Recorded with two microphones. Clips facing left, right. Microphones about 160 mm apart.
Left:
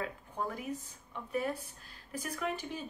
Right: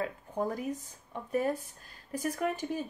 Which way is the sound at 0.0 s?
40° right (ahead or behind).